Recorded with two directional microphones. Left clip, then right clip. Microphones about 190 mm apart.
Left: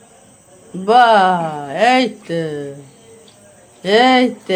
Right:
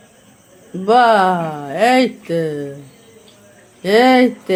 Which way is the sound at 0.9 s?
15° right (ahead or behind).